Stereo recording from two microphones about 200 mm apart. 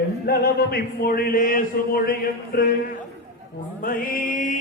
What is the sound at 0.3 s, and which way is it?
Speech, 50° left (ahead or behind).